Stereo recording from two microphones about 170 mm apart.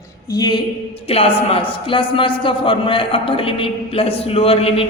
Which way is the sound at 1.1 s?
35° left (ahead or behind).